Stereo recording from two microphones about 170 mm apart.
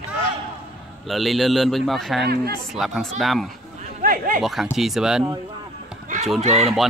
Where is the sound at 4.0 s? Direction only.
55° right (ahead or behind).